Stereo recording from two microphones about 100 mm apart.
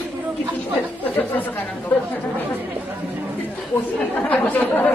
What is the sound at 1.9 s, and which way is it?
Speech, 15° left (ahead or behind).